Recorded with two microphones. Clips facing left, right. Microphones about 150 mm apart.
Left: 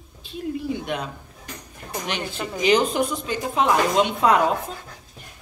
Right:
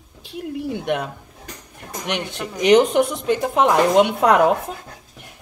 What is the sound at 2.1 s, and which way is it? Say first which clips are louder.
A woman's voice: right 4 dB; 70° right (ahead or behind).